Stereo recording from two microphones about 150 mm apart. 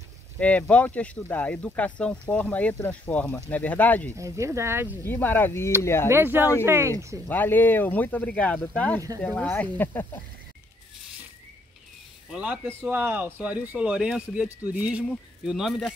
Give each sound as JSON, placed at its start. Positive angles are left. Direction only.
{"t": 0.4, "sound": "speech", "side_deg": 10}
{"t": 4.2, "sound": "speech", "side_deg": -20}
{"t": 5.0, "sound": "speech", "side_deg": 15}
{"t": 6.0, "sound": "speech", "side_deg": -15}
{"t": 7.2, "sound": "speech", "side_deg": 15}
{"t": 12.3, "sound": "speech", "side_deg": -5}